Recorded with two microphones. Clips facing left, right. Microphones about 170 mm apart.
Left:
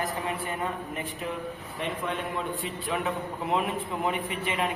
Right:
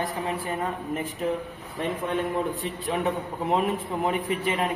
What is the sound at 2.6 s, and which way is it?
A man's voice, 40° right (ahead or behind).